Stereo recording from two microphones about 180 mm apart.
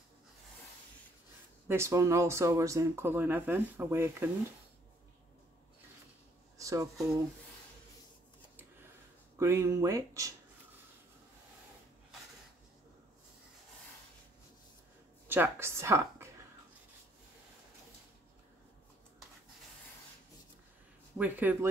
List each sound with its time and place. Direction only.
1.7 s speech: 15° right (ahead or behind)
6.6 s speech: 20° right (ahead or behind)
9.4 s speech: 15° right (ahead or behind)
15.2 s a woman's voice: 10° right (ahead or behind)
21.2 s speech: 10° right (ahead or behind)